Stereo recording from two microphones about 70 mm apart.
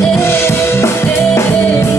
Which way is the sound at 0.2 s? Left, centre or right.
Left.